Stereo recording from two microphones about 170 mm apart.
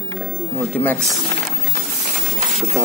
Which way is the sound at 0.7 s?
10° left (ahead or behind).